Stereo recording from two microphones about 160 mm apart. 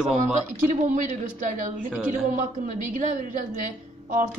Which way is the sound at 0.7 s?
50° right (ahead or behind).